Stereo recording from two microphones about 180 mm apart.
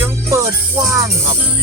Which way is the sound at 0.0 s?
15° right (ahead or behind).